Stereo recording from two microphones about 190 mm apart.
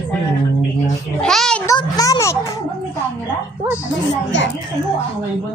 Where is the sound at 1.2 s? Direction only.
Centre (ahead or behind).